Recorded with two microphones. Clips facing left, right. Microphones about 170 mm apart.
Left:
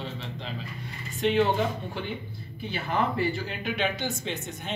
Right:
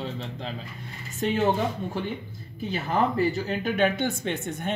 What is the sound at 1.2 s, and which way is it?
Speech, 45° right (ahead or behind).